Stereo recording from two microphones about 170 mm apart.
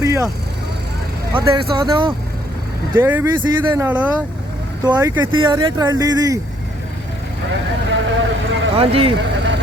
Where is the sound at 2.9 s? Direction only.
15° right (ahead or behind).